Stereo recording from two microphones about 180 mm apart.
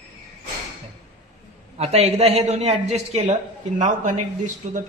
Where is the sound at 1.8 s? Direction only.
35° right (ahead or behind).